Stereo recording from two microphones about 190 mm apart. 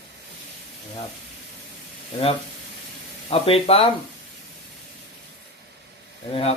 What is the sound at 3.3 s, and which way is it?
Speech, 30° left (ahead or behind).